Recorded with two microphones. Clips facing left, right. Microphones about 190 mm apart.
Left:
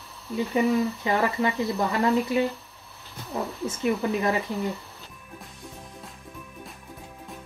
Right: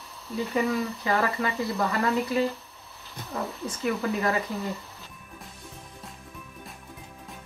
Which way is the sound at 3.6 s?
20° left (ahead or behind).